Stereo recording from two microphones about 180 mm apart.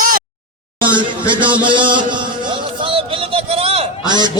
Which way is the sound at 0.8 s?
25° right (ahead or behind).